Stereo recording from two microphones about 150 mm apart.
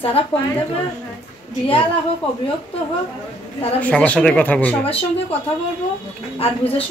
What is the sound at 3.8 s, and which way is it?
Speech, 10° left (ahead or behind).